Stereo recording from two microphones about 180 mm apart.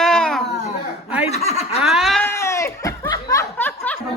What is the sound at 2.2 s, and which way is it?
Snicker, 15° left (ahead or behind).